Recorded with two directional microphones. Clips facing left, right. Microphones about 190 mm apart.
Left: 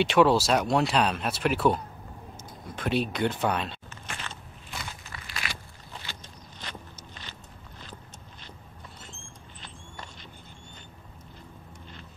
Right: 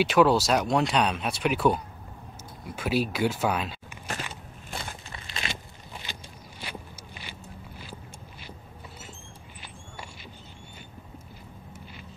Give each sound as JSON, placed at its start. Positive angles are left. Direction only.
{"t": 0.0, "sound": "speech", "side_deg": 0}
{"t": 4.7, "sound": "a sound", "side_deg": -25}
{"t": 6.6, "sound": "walk", "side_deg": -10}